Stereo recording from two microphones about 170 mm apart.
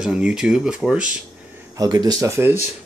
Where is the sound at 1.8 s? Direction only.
20° right (ahead or behind).